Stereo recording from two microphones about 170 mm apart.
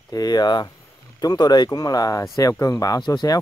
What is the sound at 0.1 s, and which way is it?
Speech, 20° left (ahead or behind).